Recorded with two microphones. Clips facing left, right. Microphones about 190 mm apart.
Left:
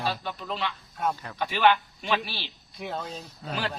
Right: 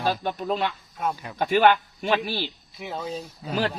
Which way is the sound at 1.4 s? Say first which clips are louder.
Right 4 dB; 45° right (ahead or behind).